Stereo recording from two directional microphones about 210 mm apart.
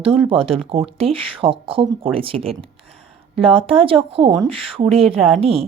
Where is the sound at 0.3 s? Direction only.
25° right (ahead or behind).